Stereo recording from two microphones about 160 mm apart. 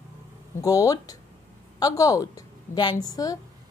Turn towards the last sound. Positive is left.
turn(degrees=25)  # may be behind; listen again after turning